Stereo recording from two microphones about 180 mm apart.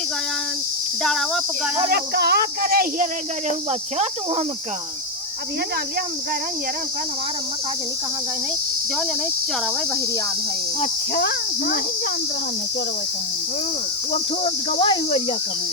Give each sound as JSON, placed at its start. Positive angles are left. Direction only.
{"t": 1.0, "sound": "speech", "side_deg": 0}
{"t": 1.9, "sound": "cricket", "side_deg": -65}
{"t": 3.7, "sound": "speech", "side_deg": -35}
{"t": 11.1, "sound": "speech", "side_deg": 60}
{"t": 14.1, "sound": "speech", "side_deg": 30}